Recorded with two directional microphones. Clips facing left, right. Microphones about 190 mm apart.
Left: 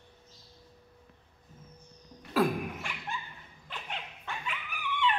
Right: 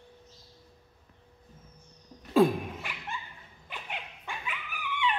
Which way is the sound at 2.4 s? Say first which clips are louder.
Right 5 dB; 25° right (ahead or behind).